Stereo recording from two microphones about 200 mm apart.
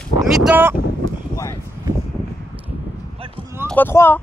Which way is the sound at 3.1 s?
30° right (ahead or behind).